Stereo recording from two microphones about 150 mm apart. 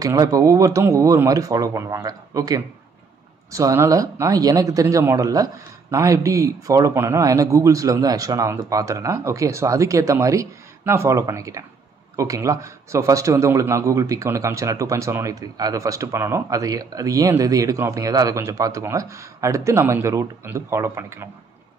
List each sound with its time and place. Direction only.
0.0 s a man's voice: 25° right (ahead or behind)